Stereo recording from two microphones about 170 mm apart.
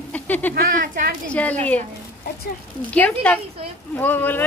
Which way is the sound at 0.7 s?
50° right (ahead or behind).